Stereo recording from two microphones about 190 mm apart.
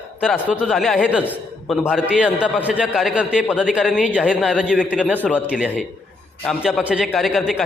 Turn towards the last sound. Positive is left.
turn(degrees=0)  # may be behind; listen again after turning